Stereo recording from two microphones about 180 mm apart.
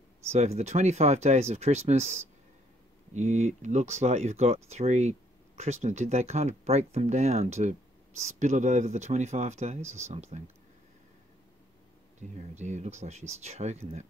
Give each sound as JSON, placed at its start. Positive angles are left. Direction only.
{"t": 0.3, "sound": "speech", "side_deg": -35}
{"t": 3.2, "sound": "speech", "side_deg": -40}
{"t": 12.2, "sound": "speech", "side_deg": -40}